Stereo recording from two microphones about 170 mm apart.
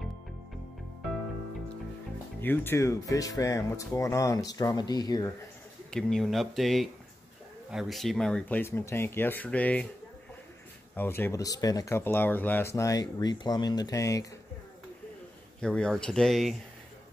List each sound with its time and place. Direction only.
2.4 s speech: 10° left (ahead or behind)
5.9 s speech: 5° left (ahead or behind)
11.0 s speech: 15° left (ahead or behind)
15.6 s speech: 5° left (ahead or behind)